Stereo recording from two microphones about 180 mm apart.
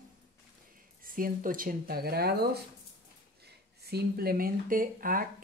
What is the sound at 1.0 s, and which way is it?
Speech, 50° right (ahead or behind).